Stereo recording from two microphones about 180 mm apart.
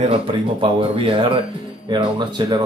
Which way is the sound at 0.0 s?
30° right (ahead or behind).